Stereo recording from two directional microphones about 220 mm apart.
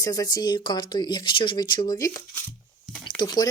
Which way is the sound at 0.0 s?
15° left (ahead or behind).